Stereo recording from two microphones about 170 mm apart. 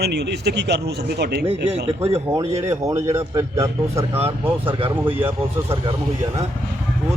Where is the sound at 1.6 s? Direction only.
40° right (ahead or behind).